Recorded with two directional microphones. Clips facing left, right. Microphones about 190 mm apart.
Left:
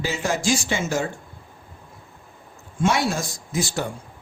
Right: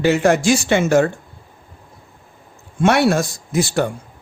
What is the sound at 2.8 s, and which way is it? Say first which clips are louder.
Speech: right 7 dB; 65° right (ahead or behind).